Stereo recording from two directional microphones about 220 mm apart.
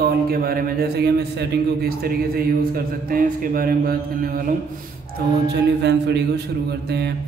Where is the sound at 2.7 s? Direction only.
40° right (ahead or behind).